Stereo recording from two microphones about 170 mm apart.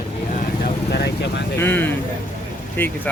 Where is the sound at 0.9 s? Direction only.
80° left.